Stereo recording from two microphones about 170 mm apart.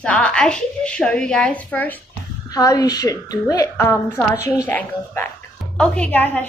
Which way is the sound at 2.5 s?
20° left (ahead or behind).